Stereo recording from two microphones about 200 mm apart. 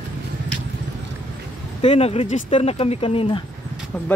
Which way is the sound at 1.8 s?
30° left (ahead or behind).